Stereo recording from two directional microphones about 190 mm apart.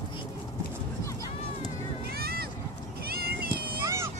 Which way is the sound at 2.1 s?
55° right (ahead or behind).